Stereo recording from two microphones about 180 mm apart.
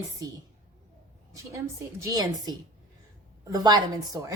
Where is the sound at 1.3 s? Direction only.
15° right (ahead or behind).